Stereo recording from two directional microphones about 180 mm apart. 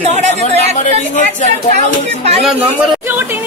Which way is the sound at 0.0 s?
40° right (ahead or behind).